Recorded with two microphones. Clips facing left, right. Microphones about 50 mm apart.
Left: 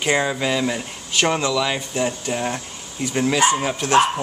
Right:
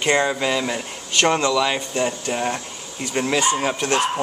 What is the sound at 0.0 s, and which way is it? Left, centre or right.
Speech, centre.